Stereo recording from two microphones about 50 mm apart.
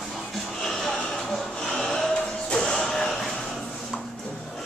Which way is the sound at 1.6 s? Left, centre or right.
Centre.